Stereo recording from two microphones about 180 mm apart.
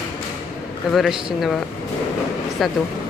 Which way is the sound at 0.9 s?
5° right (ahead or behind).